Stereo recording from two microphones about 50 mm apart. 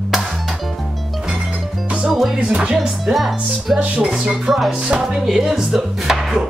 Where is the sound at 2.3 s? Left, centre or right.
Centre.